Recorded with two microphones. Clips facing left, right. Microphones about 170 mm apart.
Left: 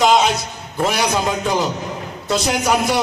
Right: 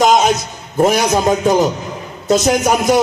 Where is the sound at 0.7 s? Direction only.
45° right (ahead or behind).